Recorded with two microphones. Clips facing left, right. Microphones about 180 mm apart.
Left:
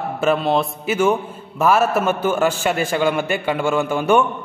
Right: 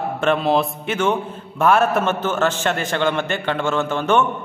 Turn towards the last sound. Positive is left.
turn(degrees=10)  # may be behind; listen again after turning